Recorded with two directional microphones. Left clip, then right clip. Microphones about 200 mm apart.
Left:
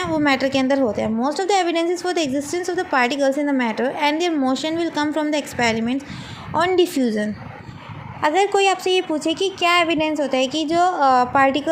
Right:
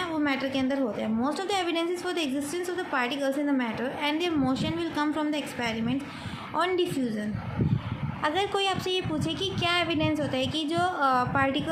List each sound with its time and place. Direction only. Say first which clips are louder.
0.0 s a woman's voice: left 9 dB; 30° left (ahead or behind)